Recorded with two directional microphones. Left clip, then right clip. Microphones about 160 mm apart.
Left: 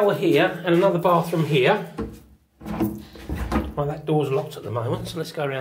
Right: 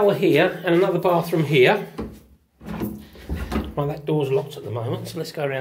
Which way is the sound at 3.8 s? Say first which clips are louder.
Right 2 dB; 55° right (ahead or behind).